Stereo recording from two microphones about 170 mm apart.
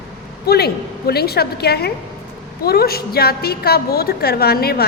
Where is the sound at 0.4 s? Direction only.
70° left (ahead or behind).